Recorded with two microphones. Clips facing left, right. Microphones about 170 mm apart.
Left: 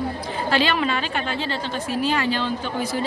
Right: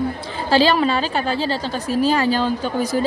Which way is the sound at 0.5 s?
35° right (ahead or behind).